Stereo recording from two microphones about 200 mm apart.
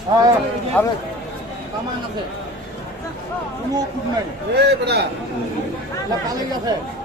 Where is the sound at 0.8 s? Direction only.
10° left (ahead or behind).